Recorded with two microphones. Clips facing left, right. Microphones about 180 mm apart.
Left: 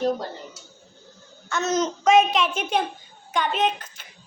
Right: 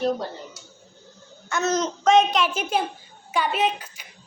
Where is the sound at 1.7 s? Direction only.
Centre (ahead or behind).